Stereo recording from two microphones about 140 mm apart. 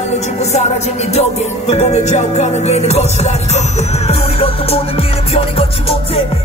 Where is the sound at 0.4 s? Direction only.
50° left (ahead or behind).